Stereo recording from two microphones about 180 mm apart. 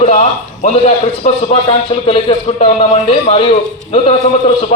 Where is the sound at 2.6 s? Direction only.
35° left (ahead or behind).